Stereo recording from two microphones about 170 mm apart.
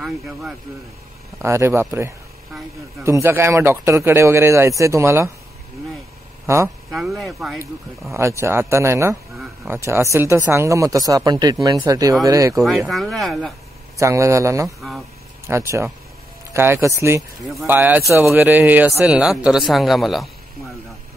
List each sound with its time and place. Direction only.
0.0 s speech: 5° right (ahead or behind)
1.4 s speech: 15° right (ahead or behind)
6.4 s speech: 15° right (ahead or behind)
6.9 s speech: centre (ahead or behind)
8.1 s speech: 15° right (ahead or behind)
12.5 s speech: centre (ahead or behind)
13.9 s speech: 15° right (ahead or behind); by 20.2 s centre (ahead or behind)